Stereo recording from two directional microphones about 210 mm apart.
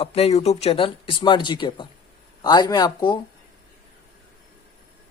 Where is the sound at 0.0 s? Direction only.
30° left (ahead or behind).